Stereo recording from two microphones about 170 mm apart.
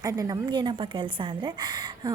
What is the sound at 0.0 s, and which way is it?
A woman's voice, 20° right (ahead or behind).